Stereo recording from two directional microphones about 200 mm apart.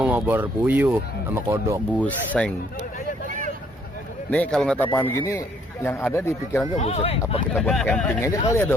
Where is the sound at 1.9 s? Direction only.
5° left (ahead or behind).